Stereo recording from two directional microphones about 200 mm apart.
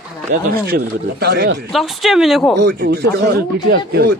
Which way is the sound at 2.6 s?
55° right (ahead or behind).